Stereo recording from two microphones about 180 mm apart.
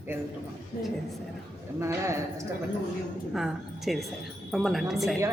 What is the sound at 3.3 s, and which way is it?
A woman's voice, centre (ahead or behind).